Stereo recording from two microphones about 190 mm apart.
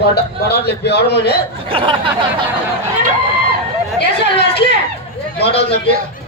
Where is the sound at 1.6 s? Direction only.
30° right (ahead or behind).